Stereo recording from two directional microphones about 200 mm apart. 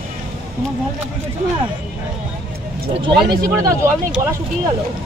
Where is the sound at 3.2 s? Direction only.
20° right (ahead or behind).